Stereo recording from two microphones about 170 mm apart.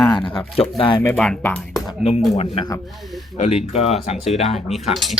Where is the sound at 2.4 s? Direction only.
30° left (ahead or behind).